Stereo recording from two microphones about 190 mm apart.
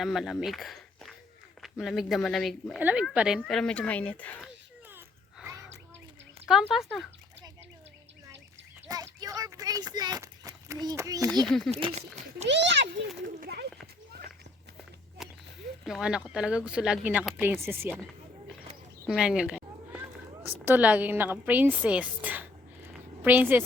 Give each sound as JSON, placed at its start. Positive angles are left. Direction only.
{"t": 0.0, "sound": "speech", "side_deg": 0}
{"t": 4.9, "sound": "a sound", "side_deg": -10}
{"t": 6.5, "sound": "speech", "side_deg": 0}
{"t": 8.9, "sound": "a sound", "side_deg": -20}
{"t": 9.2, "sound": "speech", "side_deg": -20}
{"t": 11.4, "sound": "speech", "side_deg": 0}
{"t": 11.7, "sound": "a child's voice", "side_deg": -30}
{"t": 12.5, "sound": "a child's voice", "side_deg": -70}
{"t": 13.4, "sound": "speech", "side_deg": -55}
{"t": 15.2, "sound": "a sound", "side_deg": 0}
{"t": 15.8, "sound": "speech", "side_deg": -5}
{"t": 19.0, "sound": "a sound", "side_deg": -5}
{"t": 20.4, "sound": "a woman's voice", "side_deg": -10}